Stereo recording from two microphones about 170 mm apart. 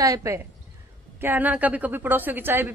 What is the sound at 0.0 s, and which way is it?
A woman's voice, 20° right (ahead or behind).